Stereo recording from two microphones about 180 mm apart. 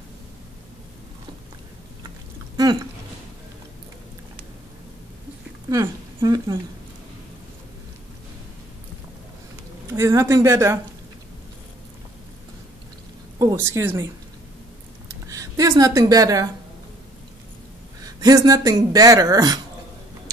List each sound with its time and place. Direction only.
2.5 s speech: 20° right (ahead or behind)
5.7 s speech: 20° right (ahead or behind)
9.9 s a woman's voice: 15° right (ahead or behind)
13.4 s a woman's voice: 15° right (ahead or behind)
15.0 s a sound: 20° right (ahead or behind)
18.0 s speech: 20° right (ahead or behind)